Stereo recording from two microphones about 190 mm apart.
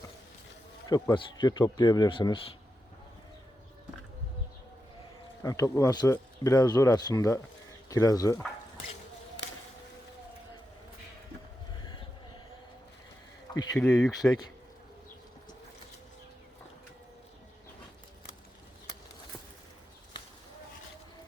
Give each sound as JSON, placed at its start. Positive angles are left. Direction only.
{"t": 0.9, "sound": "speech", "side_deg": 20}
{"t": 5.4, "sound": "speech", "side_deg": 15}
{"t": 13.5, "sound": "speech", "side_deg": 20}
{"t": 13.7, "sound": "speech", "side_deg": 5}
{"t": 14.1, "sound": "speech", "side_deg": 20}